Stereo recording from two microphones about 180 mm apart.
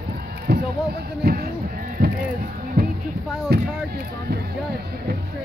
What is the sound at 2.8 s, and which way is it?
Music, 60° right (ahead or behind).